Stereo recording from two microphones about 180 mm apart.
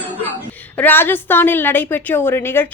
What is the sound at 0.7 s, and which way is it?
A woman's voice, 10° left (ahead or behind).